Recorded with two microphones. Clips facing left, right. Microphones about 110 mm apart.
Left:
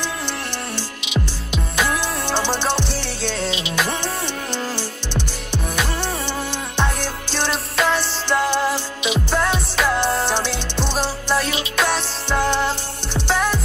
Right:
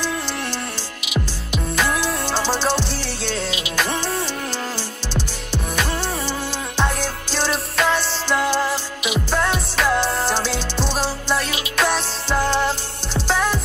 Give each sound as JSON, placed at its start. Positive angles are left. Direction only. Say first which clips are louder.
{"t": 1.0, "sound": "music", "louder": "right 1 dB", "side_deg": 30}
{"t": 2.9, "sound": "music", "louder": "left 1 dB", "side_deg": 0}
{"t": 3.4, "sound": "music", "louder": "left 2 dB", "side_deg": 35}
{"t": 3.7, "sound": "music", "louder": "right 1 dB", "side_deg": 0}
{"t": 6.8, "sound": "music", "louder": "right 1 dB", "side_deg": 0}
{"t": 9.3, "sound": "music", "louder": "right 1 dB", "side_deg": 0}